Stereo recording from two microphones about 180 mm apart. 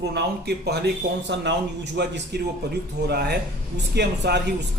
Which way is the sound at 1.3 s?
75° right (ahead or behind).